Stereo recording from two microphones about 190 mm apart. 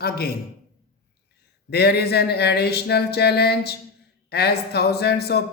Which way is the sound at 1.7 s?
60° left (ahead or behind).